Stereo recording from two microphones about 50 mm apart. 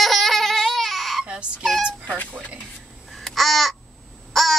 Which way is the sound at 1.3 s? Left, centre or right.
Right.